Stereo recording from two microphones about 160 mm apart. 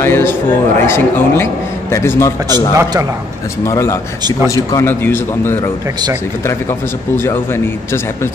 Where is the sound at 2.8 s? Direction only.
20° right (ahead or behind).